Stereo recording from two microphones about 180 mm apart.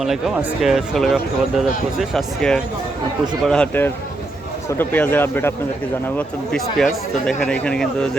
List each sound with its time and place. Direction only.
0.6 s speech: centre (ahead or behind)